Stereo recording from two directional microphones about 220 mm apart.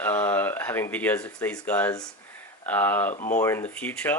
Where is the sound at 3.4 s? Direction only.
10° left (ahead or behind).